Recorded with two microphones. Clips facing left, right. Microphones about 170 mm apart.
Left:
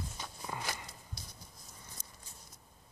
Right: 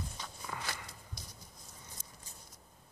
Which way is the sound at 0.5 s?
20° left (ahead or behind).